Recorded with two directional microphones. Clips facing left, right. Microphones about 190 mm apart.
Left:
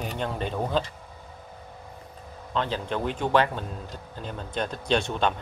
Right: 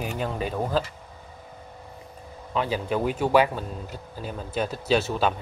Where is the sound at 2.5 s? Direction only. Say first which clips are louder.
Right 2 dB; 10° right (ahead or behind).